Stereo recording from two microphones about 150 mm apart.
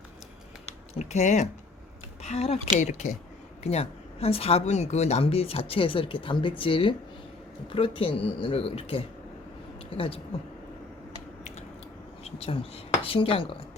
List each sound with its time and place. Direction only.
0.9 s speech: 50° left (ahead or behind)
12.2 s speech: 40° left (ahead or behind)